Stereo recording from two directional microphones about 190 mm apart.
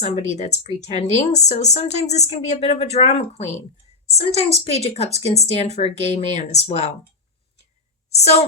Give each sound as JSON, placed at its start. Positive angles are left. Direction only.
{"t": 0.0, "sound": "a woman's voice", "side_deg": 35}
{"t": 8.1, "sound": "a woman's voice", "side_deg": 35}